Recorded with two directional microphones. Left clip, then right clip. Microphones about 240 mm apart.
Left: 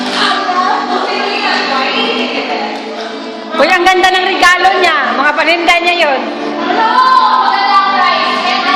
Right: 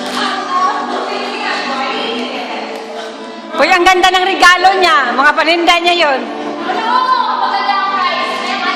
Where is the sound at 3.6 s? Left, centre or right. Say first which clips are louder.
Even; right.